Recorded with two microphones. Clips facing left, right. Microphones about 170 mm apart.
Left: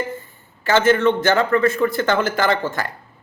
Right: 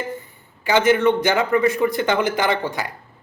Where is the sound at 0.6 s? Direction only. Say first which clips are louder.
Left 1 dB; 15° right (ahead or behind).